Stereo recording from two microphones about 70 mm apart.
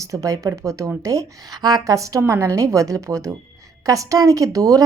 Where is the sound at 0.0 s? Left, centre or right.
Right.